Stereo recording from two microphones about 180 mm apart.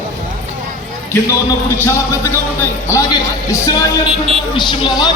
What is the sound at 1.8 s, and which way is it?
Speech, 15° left (ahead or behind).